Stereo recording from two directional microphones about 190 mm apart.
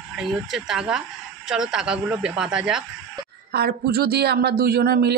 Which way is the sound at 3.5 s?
55° right (ahead or behind).